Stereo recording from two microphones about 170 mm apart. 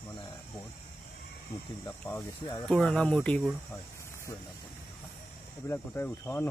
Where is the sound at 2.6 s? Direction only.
5° left (ahead or behind).